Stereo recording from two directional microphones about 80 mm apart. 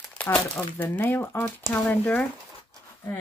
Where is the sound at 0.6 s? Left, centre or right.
Left.